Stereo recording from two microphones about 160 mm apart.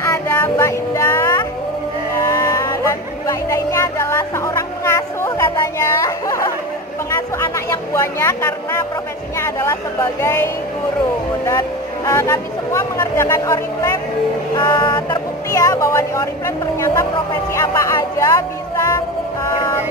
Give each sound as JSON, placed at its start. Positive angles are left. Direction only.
{"t": 0.0, "sound": "music", "side_deg": 15}
{"t": 2.1, "sound": "vehicle", "side_deg": 20}
{"t": 7.1, "sound": "a sound", "side_deg": 20}
{"t": 10.2, "sound": "speech", "side_deg": 15}
{"t": 12.1, "sound": "speech", "side_deg": 15}
{"t": 14.6, "sound": "vehicle", "side_deg": 30}
{"t": 15.0, "sound": "speech", "side_deg": 25}